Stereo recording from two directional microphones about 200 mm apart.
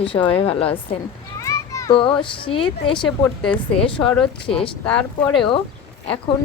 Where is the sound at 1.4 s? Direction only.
15° left (ahead or behind).